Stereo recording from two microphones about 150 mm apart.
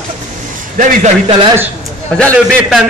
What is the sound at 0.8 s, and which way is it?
Speech, 60° right (ahead or behind).